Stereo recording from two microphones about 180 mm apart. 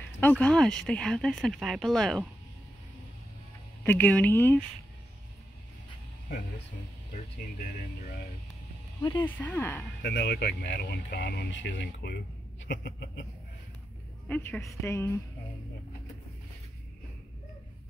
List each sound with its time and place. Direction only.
0.2 s speech: 5° left (ahead or behind)
3.8 s a woman's voice: 10° left (ahead or behind)
9.2 s a woman's voice: 10° left (ahead or behind)
10.0 s speech: 65° left (ahead or behind)
11.8 s a sound: 70° left (ahead or behind)
14.2 s a woman's voice: 10° left (ahead or behind)